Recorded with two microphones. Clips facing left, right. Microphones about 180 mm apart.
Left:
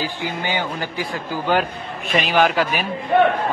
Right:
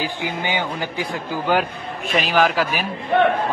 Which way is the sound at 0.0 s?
15° right (ahead or behind).